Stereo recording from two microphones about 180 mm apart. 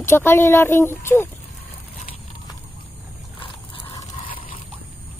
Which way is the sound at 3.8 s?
25° left (ahead or behind).